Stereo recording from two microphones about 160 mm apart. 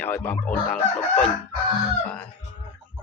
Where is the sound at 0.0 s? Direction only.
10° left (ahead or behind).